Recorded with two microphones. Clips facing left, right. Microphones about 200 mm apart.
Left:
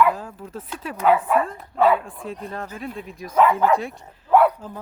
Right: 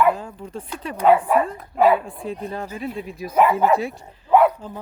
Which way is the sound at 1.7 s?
15° right (ahead or behind).